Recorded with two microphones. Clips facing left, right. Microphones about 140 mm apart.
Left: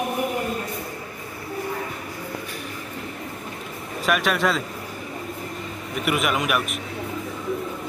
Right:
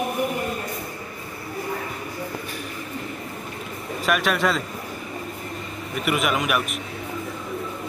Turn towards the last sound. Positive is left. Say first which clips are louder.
# even
turn(degrees=0)  # may be behind; listen again after turning